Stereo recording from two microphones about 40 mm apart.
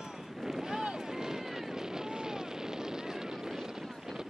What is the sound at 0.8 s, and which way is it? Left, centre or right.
Vehicle, centre.